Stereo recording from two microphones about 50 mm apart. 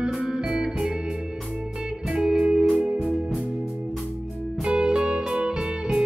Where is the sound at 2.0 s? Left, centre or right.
Centre.